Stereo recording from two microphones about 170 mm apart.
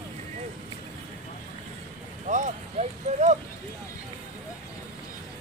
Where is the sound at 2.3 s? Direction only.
45° right (ahead or behind).